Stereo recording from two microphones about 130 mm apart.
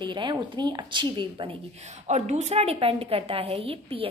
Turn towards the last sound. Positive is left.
turn(degrees=-45)  # may be behind; listen again after turning